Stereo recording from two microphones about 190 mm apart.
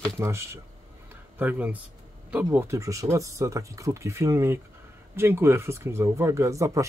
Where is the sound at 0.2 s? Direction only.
15° right (ahead or behind).